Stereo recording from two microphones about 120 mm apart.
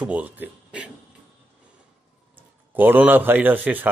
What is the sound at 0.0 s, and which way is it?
Speech, 10° right (ahead or behind).